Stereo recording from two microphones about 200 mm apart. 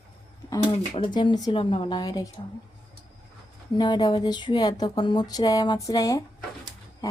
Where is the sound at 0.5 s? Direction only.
25° left (ahead or behind).